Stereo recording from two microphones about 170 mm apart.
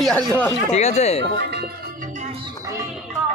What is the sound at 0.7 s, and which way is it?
Speech, 40° left (ahead or behind).